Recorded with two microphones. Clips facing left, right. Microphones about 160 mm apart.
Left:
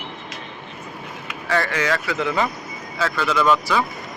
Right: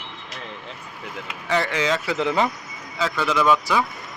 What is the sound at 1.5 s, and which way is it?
Speech, 20° right (ahead or behind).